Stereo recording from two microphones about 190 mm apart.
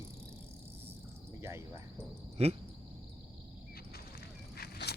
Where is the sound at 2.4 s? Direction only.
35° right (ahead or behind).